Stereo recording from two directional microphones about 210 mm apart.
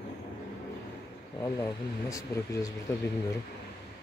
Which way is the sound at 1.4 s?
15° left (ahead or behind).